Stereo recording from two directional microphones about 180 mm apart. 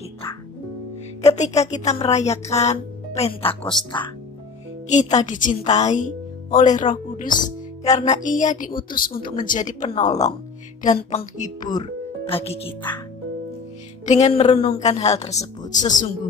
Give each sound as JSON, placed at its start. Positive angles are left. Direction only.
{"t": 1.2, "sound": "speech", "side_deg": 40}
{"t": 4.8, "sound": "a woman's voice", "side_deg": 40}
{"t": 11.7, "sound": "speech", "side_deg": 30}
{"t": 14.0, "sound": "speech", "side_deg": 40}